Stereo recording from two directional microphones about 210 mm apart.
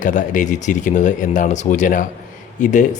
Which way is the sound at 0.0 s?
35° left (ahead or behind).